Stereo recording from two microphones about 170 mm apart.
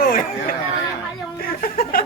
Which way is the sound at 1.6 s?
55° left (ahead or behind).